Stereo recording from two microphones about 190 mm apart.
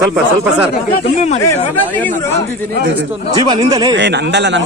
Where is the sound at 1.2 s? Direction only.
35° left (ahead or behind).